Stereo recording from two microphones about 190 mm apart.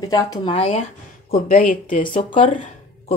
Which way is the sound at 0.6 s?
30° left (ahead or behind).